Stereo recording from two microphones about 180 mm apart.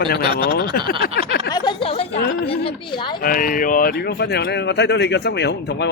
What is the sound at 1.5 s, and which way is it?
A woman's voice, 25° left (ahead or behind).